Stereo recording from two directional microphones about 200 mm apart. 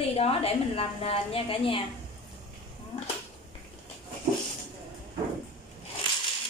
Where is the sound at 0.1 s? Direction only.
30° left (ahead or behind).